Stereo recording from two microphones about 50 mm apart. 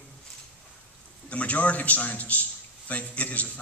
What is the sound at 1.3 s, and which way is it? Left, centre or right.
A man's voice, left.